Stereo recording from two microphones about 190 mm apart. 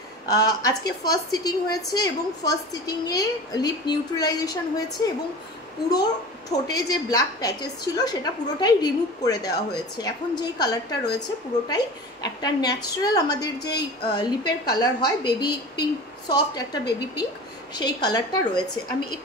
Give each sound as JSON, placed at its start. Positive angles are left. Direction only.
{"t": 0.3, "sound": "a woman's voice", "side_deg": 20}
{"t": 6.5, "sound": "a woman's voice", "side_deg": 20}